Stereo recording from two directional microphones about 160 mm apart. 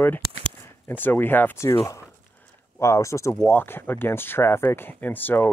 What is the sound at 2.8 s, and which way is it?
Speech, 20° left (ahead or behind).